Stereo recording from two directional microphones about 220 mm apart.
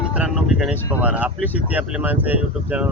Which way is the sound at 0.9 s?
5° right (ahead or behind).